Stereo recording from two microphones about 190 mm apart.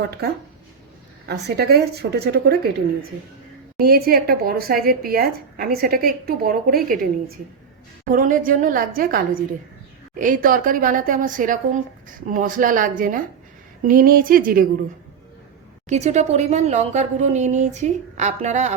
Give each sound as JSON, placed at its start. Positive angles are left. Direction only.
{"t": 0.0, "sound": "a woman's voice", "side_deg": -55}
{"t": 3.8, "sound": "speech", "side_deg": -55}
{"t": 15.9, "sound": "speech", "side_deg": -35}